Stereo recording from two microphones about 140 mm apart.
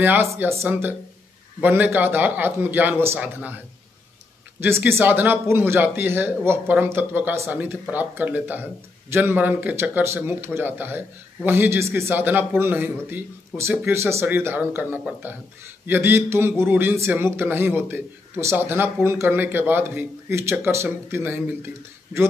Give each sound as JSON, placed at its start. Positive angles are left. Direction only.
{"t": 0.0, "sound": "speech", "side_deg": -15}
{"t": 4.6, "sound": "speech", "side_deg": -15}